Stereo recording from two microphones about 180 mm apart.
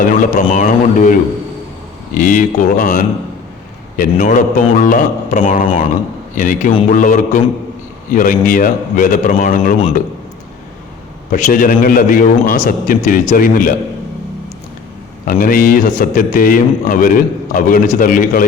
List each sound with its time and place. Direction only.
0.0 s a man's voice: 50° left (ahead or behind)
2.1 s a man's voice: 50° left (ahead or behind)
11.3 s a man's voice: 45° left (ahead or behind)
15.2 s a man's voice: 50° left (ahead or behind)